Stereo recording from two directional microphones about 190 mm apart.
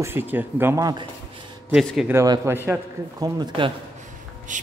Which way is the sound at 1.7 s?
Centre (ahead or behind).